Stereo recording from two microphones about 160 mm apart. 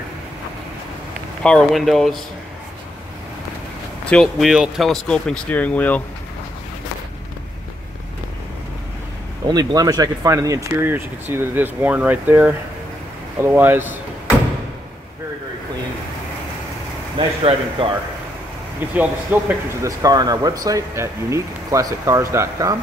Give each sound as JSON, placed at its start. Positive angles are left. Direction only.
{"t": 1.4, "sound": "speech", "side_deg": 5}
{"t": 4.0, "sound": "speech", "side_deg": 5}
{"t": 9.5, "sound": "speech", "side_deg": -25}
{"t": 17.2, "sound": "speech", "side_deg": -35}
{"t": 18.9, "sound": "speech", "side_deg": -10}
{"t": 20.0, "sound": "speech", "side_deg": -25}